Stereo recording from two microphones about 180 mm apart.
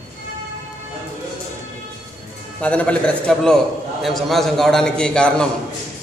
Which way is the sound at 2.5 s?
5° left (ahead or behind).